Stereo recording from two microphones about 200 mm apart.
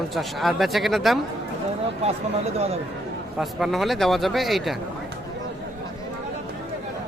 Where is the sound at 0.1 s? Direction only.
Centre (ahead or behind).